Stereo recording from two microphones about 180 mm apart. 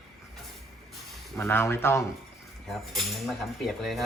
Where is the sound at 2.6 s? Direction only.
Centre (ahead or behind).